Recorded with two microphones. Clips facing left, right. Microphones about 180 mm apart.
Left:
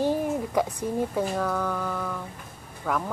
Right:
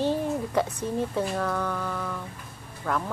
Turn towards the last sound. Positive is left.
turn(degrees=10)  # may be behind; listen again after turning